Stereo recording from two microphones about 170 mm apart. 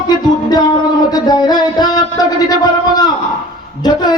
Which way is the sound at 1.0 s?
25° left (ahead or behind).